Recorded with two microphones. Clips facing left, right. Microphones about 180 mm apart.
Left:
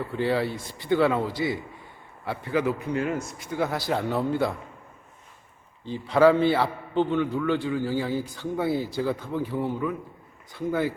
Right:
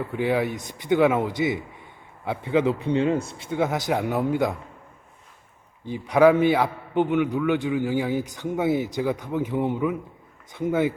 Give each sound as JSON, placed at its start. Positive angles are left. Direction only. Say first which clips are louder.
{"t": 0.1, "sound": "a man's voice", "louder": "right 2 dB", "side_deg": -15}
{"t": 5.8, "sound": "a man's voice", "louder": "right 2 dB", "side_deg": -15}